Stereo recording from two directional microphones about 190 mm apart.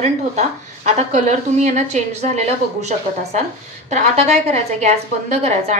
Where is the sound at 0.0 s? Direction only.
35° right (ahead or behind).